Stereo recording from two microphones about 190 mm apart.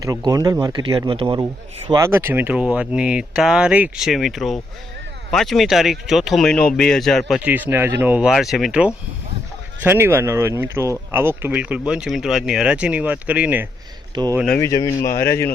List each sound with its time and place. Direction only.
0.0 s speech: 20° right (ahead or behind)
1.9 s speech: 15° right (ahead or behind)
14.4 s speech: 10° left (ahead or behind)